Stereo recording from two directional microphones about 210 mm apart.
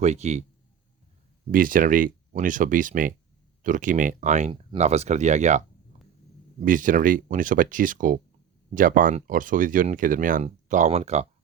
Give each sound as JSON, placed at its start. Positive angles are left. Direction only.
{"t": 0.0, "sound": "speech", "side_deg": -30}
{"t": 1.5, "sound": "speech", "side_deg": -40}